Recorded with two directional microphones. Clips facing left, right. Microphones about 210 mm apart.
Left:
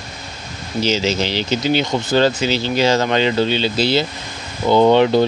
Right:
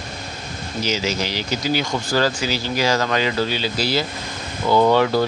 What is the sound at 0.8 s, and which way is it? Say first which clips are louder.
Speech: left 5 dB; 25° left (ahead or behind).